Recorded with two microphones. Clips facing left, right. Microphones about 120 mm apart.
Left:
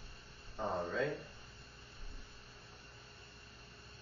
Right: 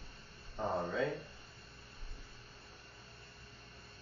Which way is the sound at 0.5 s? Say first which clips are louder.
Right 1 dB; centre (ahead or behind).